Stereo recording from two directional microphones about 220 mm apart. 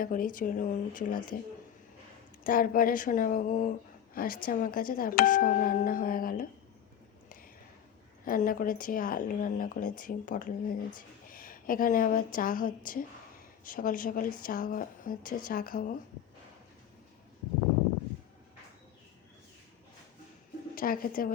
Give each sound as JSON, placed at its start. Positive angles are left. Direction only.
{"t": 0.0, "sound": "a woman's voice", "side_deg": 40}
{"t": 2.4, "sound": "a woman's voice", "side_deg": 40}
{"t": 8.2, "sound": "a woman's voice", "side_deg": 40}
{"t": 20.7, "sound": "a woman's voice", "side_deg": 40}